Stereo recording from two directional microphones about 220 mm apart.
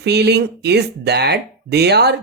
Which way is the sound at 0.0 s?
50° right (ahead or behind).